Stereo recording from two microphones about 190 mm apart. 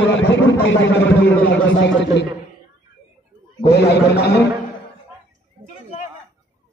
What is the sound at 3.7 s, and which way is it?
Speech, 60° left (ahead or behind).